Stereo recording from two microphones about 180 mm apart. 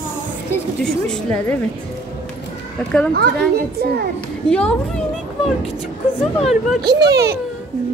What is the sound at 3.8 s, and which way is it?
Speech, 60° right (ahead or behind).